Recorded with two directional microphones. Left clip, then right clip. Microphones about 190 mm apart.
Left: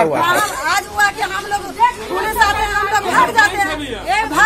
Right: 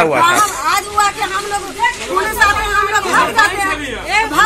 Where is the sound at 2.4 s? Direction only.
25° left (ahead or behind).